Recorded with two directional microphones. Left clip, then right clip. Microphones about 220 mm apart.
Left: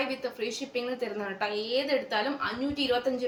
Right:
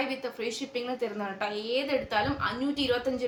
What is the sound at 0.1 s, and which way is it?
A woman's voice, 15° right (ahead or behind).